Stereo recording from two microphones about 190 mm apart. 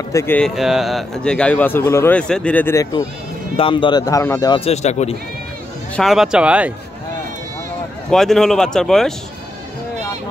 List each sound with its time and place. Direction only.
0.1 s speech: 15° left (ahead or behind)
0.4 s a man's voice: centre (ahead or behind); by 3.0 s 15° left (ahead or behind)
3.5 s speech: 25° left (ahead or behind)
5.9 s a man's voice: centre (ahead or behind)
8.1 s a man's voice: centre (ahead or behind)